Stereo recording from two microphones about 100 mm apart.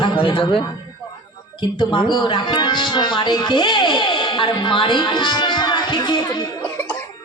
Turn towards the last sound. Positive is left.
turn(degrees=50)  # may be behind; listen again after turning